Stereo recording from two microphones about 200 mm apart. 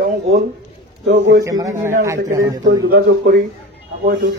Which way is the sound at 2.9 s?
55° right (ahead or behind).